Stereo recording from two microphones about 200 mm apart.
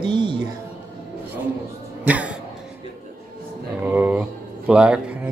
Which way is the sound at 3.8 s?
10° right (ahead or behind).